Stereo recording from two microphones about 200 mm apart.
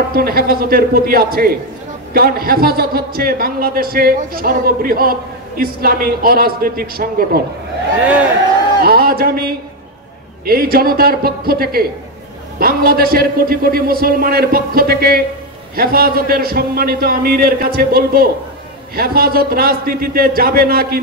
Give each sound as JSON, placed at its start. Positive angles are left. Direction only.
{"t": 0.1, "sound": "a man's voice", "side_deg": -50}
{"t": 8.8, "sound": "a man's voice", "side_deg": -50}